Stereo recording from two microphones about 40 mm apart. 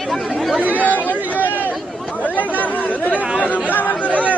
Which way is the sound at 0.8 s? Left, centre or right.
Left.